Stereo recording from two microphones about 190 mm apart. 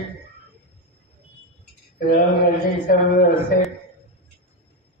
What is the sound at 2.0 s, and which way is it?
A man's voice, 50° left (ahead or behind).